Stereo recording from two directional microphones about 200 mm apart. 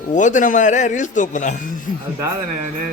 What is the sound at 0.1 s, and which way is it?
Speech, 40° left (ahead or behind).